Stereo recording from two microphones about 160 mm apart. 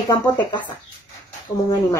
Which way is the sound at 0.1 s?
25° left (ahead or behind).